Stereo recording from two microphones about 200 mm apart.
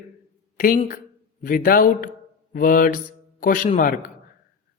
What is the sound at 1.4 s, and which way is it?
Mantra, 45° left (ahead or behind).